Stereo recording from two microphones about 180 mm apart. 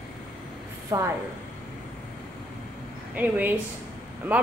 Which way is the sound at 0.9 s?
20° right (ahead or behind).